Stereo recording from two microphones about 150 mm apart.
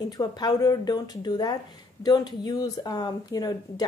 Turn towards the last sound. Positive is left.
turn(degrees=25)  # may be behind; listen again after turning